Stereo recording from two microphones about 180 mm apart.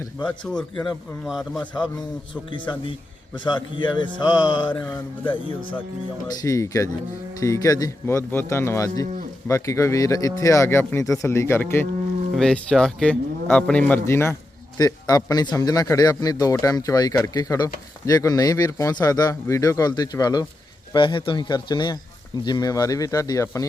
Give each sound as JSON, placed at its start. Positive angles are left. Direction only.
{"t": 1.3, "sound": "speech", "side_deg": 0}
{"t": 2.5, "sound": "speech", "side_deg": 25}
{"t": 4.7, "sound": "livestock", "side_deg": 10}
{"t": 5.2, "sound": "speech", "side_deg": 30}
{"t": 6.2, "sound": "speech", "side_deg": 20}
{"t": 7.3, "sound": "livestock", "side_deg": 20}
{"t": 12.3, "sound": "speech", "side_deg": 5}